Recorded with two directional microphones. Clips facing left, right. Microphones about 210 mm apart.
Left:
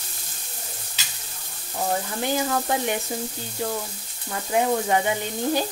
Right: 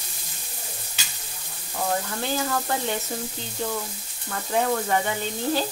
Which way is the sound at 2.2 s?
15° left (ahead or behind).